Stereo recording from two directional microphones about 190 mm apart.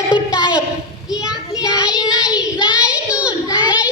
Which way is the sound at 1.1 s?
5° right (ahead or behind).